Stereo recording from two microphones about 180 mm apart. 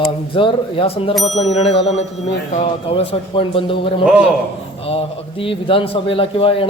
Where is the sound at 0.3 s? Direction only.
30° left (ahead or behind).